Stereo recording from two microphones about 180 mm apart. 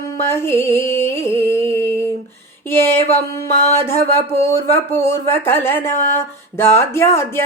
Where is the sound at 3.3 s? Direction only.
15° left (ahead or behind).